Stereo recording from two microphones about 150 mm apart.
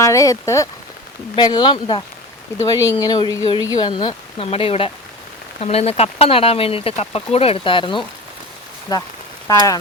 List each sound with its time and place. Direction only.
0.0 s speech: 20° left (ahead or behind)